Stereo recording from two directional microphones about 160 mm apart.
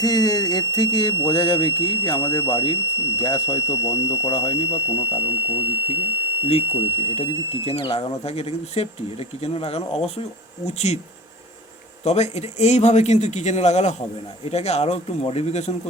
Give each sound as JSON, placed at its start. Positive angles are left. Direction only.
{"t": 0.0, "sound": "speech", "side_deg": 25}
{"t": 12.0, "sound": "speech", "side_deg": 45}